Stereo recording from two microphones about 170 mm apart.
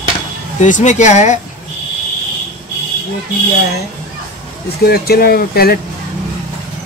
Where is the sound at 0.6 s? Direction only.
45° left (ahead or behind).